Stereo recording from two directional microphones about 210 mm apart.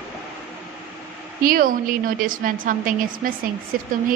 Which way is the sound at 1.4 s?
45° right (ahead or behind).